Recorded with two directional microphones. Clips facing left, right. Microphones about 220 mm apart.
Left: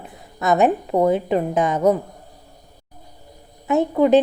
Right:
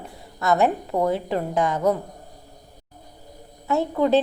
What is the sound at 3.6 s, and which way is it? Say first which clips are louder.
Speech: left 4 dB; 15° left (ahead or behind).